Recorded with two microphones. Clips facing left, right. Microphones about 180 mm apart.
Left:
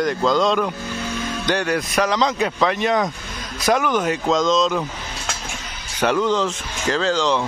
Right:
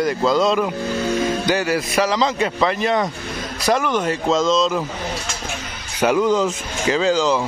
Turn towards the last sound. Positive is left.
turn(degrees=-5)  # may be behind; listen again after turning